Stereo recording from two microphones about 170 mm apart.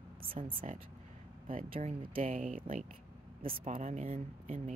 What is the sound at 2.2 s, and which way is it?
Speech, 50° right (ahead or behind).